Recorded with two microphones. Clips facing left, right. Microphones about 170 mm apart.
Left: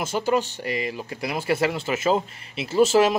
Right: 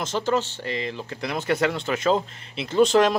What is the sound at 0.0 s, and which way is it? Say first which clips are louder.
Speech: left 1 dB; 10° left (ahead or behind).